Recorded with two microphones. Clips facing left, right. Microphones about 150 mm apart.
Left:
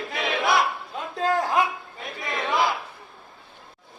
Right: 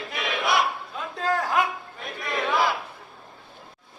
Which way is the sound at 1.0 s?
25° left (ahead or behind).